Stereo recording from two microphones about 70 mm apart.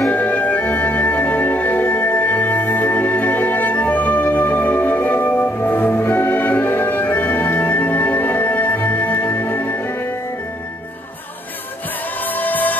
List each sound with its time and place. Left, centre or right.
0.1 s music: left
12.4 s music: left